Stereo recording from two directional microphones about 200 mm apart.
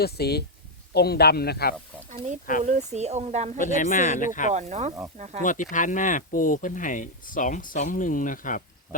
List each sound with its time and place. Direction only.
0.0 s speech: 55° left (ahead or behind)
2.6 s speech: 35° right (ahead or behind)
3.6 s speech: 40° left (ahead or behind)
4.5 s speech: 35° right (ahead or behind)
5.4 s speech: 40° left (ahead or behind)